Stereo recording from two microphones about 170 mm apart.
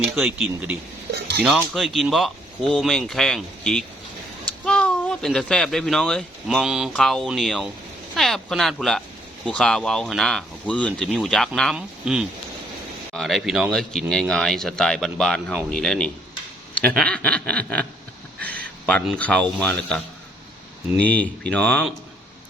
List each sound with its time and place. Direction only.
0.2 s speech: 5° right (ahead or behind)
1.1 s a sound: 70° right (ahead or behind)
1.5 s speech: centre (ahead or behind)
18.3 s a sound: 10° left (ahead or behind)
19.0 s speech: 5° left (ahead or behind)
21.0 s speech: 10° left (ahead or behind)